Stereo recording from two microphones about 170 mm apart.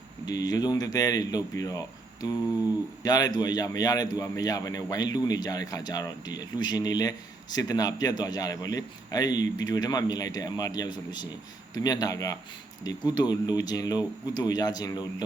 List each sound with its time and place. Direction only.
0.3 s a man's voice: 20° left (ahead or behind)
3.0 s a man's voice: 20° left (ahead or behind)